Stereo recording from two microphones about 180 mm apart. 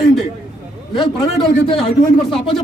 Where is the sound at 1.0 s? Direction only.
25° left (ahead or behind).